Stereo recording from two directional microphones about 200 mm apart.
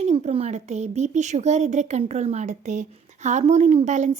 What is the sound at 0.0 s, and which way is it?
Speech, 35° right (ahead or behind).